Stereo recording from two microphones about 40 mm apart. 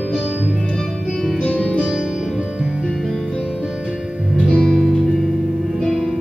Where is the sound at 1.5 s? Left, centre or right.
Left.